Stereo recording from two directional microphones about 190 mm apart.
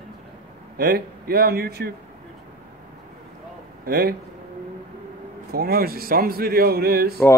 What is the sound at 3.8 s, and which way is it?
Speech, 50° right (ahead or behind).